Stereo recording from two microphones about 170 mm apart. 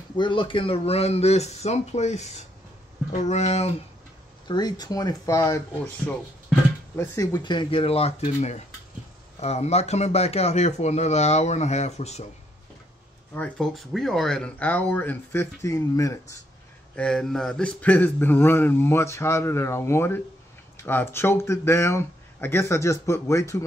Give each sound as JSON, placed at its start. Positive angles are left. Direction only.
{"t": 0.2, "sound": "speech", "side_deg": 30}
{"t": 4.5, "sound": "speech", "side_deg": 25}
{"t": 7.0, "sound": "speech", "side_deg": 20}
{"t": 13.3, "sound": "a man's voice", "side_deg": 5}
{"t": 16.9, "sound": "a man's voice", "side_deg": 5}